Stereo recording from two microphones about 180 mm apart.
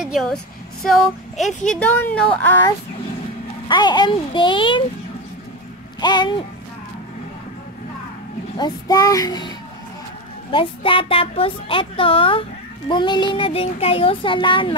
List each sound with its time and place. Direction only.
0.0 s a woman's voice: centre (ahead or behind)
0.8 s female singing: centre (ahead or behind)
1.7 s speech: 10° left (ahead or behind)
3.6 s a woman's voice: 25° left (ahead or behind)
5.9 s a woman's voice: 25° left (ahead or behind)
8.5 s a woman's voice: 20° left (ahead or behind)
10.5 s a woman's voice: 30° left (ahead or behind)